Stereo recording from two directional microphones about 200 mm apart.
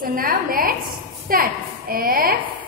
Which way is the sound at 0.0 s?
45° right (ahead or behind).